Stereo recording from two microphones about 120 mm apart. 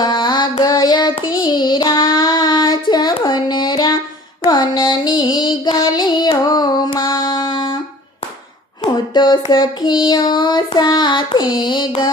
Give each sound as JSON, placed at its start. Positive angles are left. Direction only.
{"t": 0.0, "sound": "music", "side_deg": 40}
{"t": 0.6, "sound": "child singing", "side_deg": 30}
{"t": 6.5, "sound": "music", "side_deg": 35}
{"t": 8.8, "sound": "child singing", "side_deg": 35}